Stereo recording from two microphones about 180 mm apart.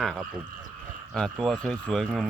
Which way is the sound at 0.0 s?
Centre (ahead or behind).